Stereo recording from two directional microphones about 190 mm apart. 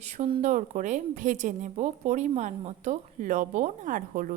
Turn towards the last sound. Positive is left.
turn(degrees=-45)  # may be behind; listen again after turning